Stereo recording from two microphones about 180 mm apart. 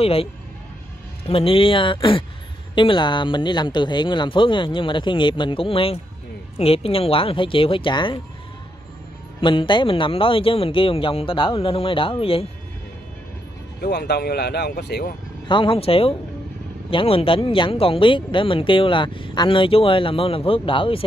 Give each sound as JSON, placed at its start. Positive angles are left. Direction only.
{"t": 0.0, "sound": "speech", "side_deg": 30}
{"t": 9.4, "sound": "speech", "side_deg": 25}
{"t": 13.7, "sound": "speech", "side_deg": 65}
{"t": 15.4, "sound": "speech", "side_deg": 30}